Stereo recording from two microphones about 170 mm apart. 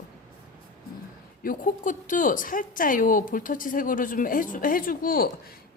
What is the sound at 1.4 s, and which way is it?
A woman's voice, 50° left (ahead or behind).